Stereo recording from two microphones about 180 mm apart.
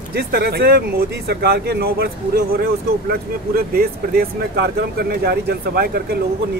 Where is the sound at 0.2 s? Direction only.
60° right (ahead or behind).